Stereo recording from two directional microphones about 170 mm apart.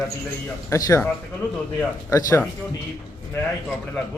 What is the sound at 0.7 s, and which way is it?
Speech, 20° left (ahead or behind).